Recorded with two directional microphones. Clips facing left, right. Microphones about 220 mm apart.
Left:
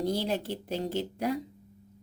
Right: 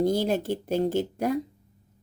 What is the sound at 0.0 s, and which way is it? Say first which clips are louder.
Speech: right 6 dB; 50° right (ahead or behind).